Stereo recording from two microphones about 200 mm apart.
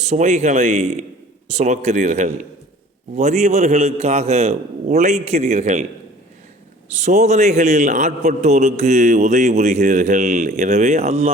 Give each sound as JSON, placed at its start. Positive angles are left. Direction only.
{"t": 0.0, "sound": "a man's voice", "side_deg": -35}
{"t": 6.9, "sound": "a man's voice", "side_deg": -35}